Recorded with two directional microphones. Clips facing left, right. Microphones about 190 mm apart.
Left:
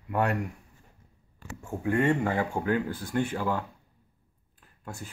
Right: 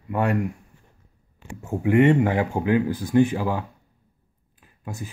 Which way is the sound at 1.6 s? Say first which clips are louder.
Right 8 dB; 20° right (ahead or behind).